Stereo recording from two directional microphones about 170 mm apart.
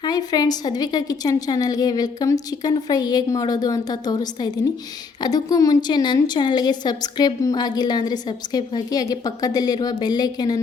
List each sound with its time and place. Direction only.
0.0 s a woman's voice: 25° left (ahead or behind)